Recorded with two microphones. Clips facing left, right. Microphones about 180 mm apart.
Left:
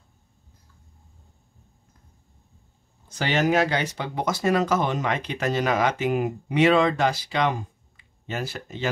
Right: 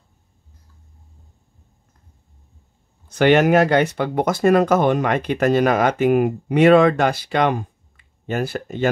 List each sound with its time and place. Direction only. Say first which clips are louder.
3.1 s speech: right 9 dB; 60° right (ahead or behind)